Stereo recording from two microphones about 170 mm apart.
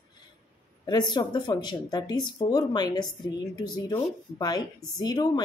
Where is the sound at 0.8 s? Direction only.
25° left (ahead or behind).